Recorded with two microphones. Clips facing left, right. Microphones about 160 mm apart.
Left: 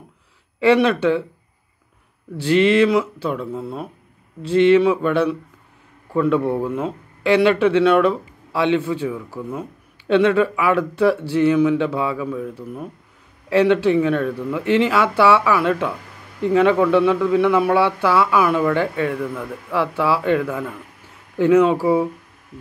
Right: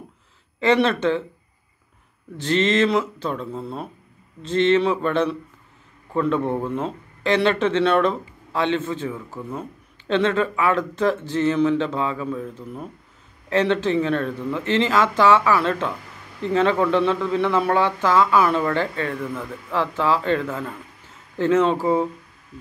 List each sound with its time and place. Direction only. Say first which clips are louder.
0.6 s speech: left 3 dB; 10° left (ahead or behind)
2.3 s speech: left 5 dB; 10° left (ahead or behind)